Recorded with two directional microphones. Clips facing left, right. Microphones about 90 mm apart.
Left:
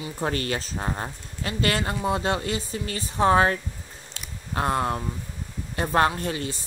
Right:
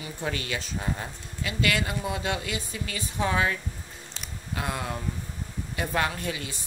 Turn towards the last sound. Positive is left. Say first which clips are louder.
# left 4 dB
turn(degrees=40)  # may be behind; listen again after turning